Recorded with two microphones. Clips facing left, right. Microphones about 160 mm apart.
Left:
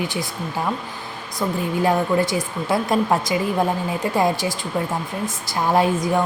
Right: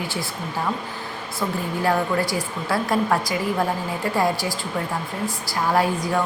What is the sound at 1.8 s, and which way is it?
A woman's voice, 20° left (ahead or behind).